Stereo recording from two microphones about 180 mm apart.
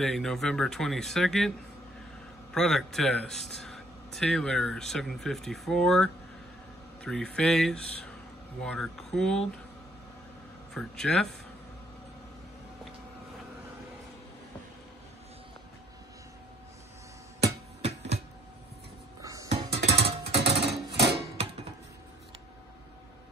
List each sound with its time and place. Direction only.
0.0 s a man's voice: centre (ahead or behind)
2.5 s a man's voice: centre (ahead or behind)
10.7 s a man's voice: 5° left (ahead or behind)
17.8 s a sound: 35° right (ahead or behind)
19.2 s music: 20° right (ahead or behind)
19.5 s music: 35° right (ahead or behind)